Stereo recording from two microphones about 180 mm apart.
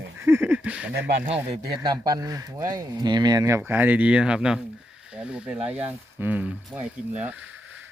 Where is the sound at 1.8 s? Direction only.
25° right (ahead or behind).